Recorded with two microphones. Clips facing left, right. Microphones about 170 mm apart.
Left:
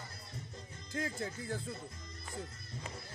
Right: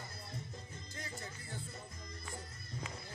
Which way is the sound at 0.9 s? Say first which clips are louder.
Left 11 dB; 90° left.